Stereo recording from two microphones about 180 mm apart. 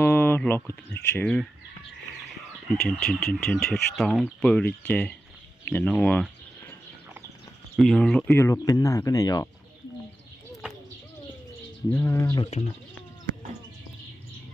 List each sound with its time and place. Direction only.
0.0 s speech: 10° left (ahead or behind)
2.7 s speech: 5° left (ahead or behind)
7.7 s speech: centre (ahead or behind)
8.3 s speech: 15° left (ahead or behind)
11.9 s speech: 15° left (ahead or behind)
12.4 s speech: 35° left (ahead or behind)